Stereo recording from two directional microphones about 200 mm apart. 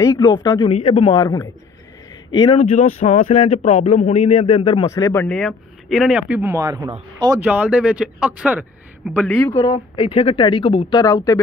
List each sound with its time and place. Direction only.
0.0 s speech: 20° left (ahead or behind)
0.7 s speech: 30° left (ahead or behind); by 7.4 s 15° right (ahead or behind)
7.4 s speech: 5° right (ahead or behind)
9.1 s speech: 5° left (ahead or behind)
9.5 s speech: 20° left (ahead or behind)